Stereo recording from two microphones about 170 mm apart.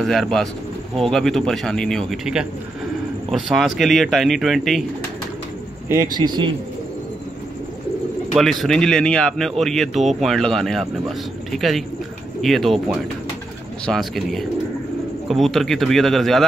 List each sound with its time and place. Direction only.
0.0 s speech: centre (ahead or behind)
5.9 s a man's voice: 20° right (ahead or behind)
8.4 s speech: centre (ahead or behind)
13.8 s speech: centre (ahead or behind)